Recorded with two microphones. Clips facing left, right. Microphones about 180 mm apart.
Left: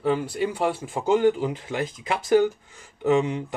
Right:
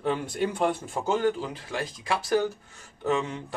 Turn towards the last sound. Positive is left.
turn(degrees=15)  # may be behind; listen again after turning